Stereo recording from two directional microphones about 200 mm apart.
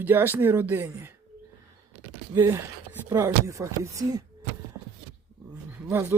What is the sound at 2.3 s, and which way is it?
Speech, 15° right (ahead or behind).